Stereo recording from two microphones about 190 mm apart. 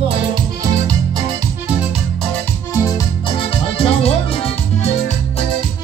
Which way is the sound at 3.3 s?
30° left (ahead or behind).